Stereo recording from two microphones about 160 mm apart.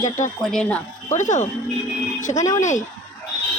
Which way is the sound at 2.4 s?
20° left (ahead or behind).